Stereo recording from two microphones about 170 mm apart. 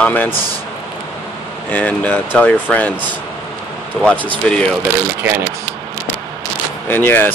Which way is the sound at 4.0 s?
5° left (ahead or behind).